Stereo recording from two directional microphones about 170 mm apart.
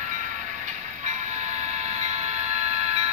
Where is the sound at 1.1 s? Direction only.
40° right (ahead or behind).